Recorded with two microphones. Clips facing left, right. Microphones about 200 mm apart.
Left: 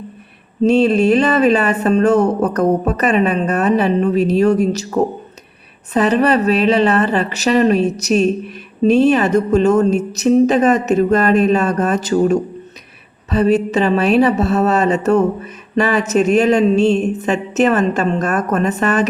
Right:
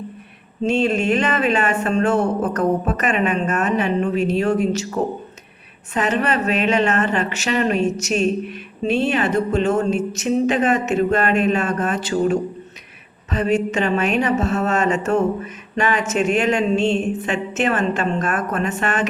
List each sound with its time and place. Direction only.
0.6 s a woman's voice: 40° left (ahead or behind)
5.9 s a woman's voice: 35° left (ahead or behind)